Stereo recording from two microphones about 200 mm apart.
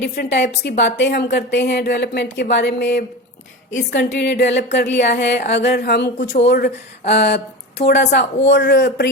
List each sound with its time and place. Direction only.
0.0 s speech: 55° left (ahead or behind)